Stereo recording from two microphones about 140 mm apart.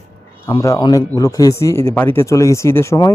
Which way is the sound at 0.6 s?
25° left (ahead or behind).